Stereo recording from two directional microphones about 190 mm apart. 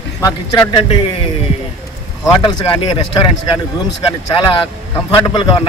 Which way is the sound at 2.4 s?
25° left (ahead or behind).